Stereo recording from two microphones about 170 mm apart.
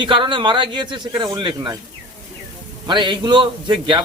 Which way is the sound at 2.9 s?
25° right (ahead or behind).